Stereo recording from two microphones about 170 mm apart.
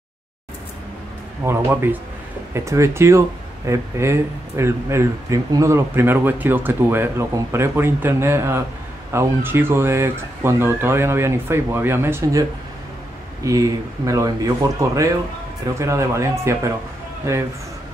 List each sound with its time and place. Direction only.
1.4 s speech: 15° right (ahead or behind)